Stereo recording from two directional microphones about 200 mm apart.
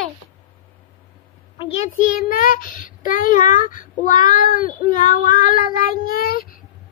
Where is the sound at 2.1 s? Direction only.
45° left (ahead or behind).